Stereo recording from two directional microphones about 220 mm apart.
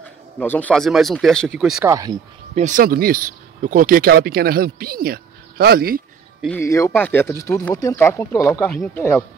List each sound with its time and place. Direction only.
0.4 s speech: 5° left (ahead or behind)
1.9 s speech: 15° right (ahead or behind)
2.5 s speech: 35° right (ahead or behind)
6.4 s speech: 10° left (ahead or behind)